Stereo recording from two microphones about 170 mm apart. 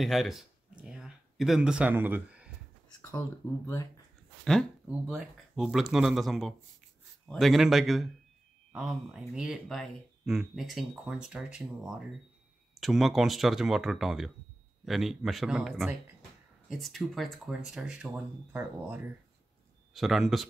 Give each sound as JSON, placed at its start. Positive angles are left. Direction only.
{"t": 0.0, "sound": "a sound", "side_deg": 0}
{"t": 3.0, "sound": "speech", "side_deg": 15}
{"t": 4.5, "sound": "speech", "side_deg": 0}
{"t": 19.9, "sound": "speech", "side_deg": 0}